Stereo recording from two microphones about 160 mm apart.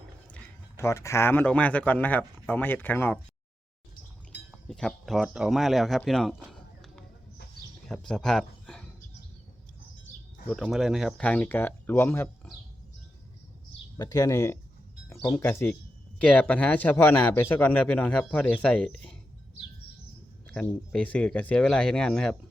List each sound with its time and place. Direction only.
0.8 s speech: 20° left (ahead or behind)
4.7 s speech: 5° left (ahead or behind)
6.1 s chop: centre (ahead or behind)
7.9 s speech: 5° left (ahead or behind)
10.5 s speech: centre (ahead or behind)
13.9 s speech: 20° left (ahead or behind)
15.1 s music: 25° left (ahead or behind)
15.4 s speech: 15° left (ahead or behind)
20.5 s speech: 5° left (ahead or behind)